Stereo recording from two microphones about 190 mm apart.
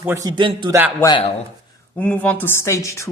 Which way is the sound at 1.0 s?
20° left (ahead or behind).